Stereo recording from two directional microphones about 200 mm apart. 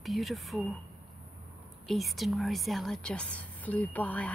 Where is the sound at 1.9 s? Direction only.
Centre (ahead or behind).